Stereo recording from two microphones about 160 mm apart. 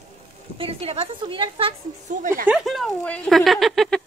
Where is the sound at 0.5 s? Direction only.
35° right (ahead or behind).